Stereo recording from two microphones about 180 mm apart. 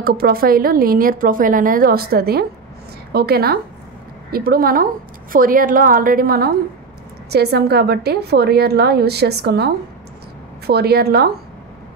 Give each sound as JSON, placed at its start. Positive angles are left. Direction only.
{"t": 0.0, "sound": "a woman's voice", "side_deg": -55}
{"t": 10.7, "sound": "a woman's voice", "side_deg": -60}